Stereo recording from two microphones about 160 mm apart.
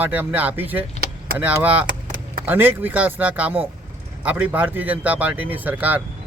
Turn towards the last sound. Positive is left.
turn(degrees=-10)  # may be behind; listen again after turning